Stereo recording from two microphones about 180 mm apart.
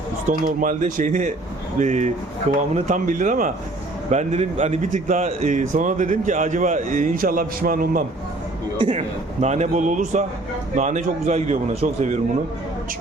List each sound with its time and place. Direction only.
0.3 s a man's voice: 45° right (ahead or behind)
8.9 s a man's voice: 40° right (ahead or behind)